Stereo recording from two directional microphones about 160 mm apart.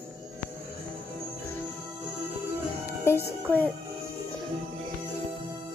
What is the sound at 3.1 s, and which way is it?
Speech, 15° left (ahead or behind).